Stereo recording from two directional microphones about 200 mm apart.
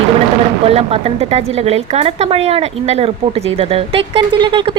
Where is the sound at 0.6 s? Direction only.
30° right (ahead or behind).